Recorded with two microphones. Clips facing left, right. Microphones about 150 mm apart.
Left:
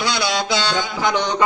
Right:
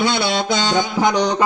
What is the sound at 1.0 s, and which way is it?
Music, 40° right (ahead or behind).